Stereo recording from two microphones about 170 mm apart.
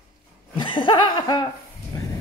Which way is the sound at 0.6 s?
30° left (ahead or behind).